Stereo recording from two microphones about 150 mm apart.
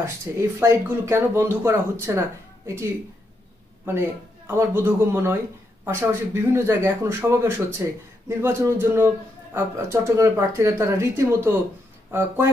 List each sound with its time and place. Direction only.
0.0 s speech: 20° right (ahead or behind)
4.5 s speech: 15° right (ahead or behind)